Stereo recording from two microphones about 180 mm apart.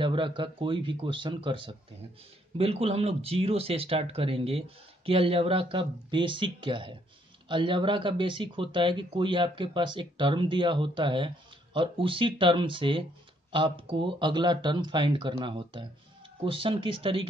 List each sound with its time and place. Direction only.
0.0 s speech: 25° right (ahead or behind)